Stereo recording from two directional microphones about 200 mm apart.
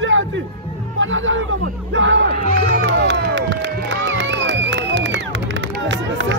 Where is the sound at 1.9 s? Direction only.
65° right (ahead or behind).